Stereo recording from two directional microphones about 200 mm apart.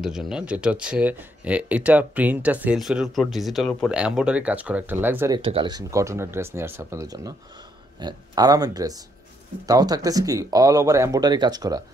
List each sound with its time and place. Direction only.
0.0 s speech: centre (ahead or behind)
5.4 s speech: 25° right (ahead or behind)